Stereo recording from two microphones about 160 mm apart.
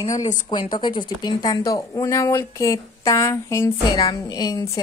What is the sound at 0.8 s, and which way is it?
Speech, 30° left (ahead or behind).